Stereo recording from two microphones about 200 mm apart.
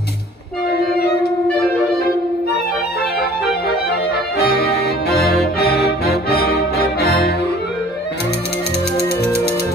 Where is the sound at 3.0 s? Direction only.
50° left (ahead or behind).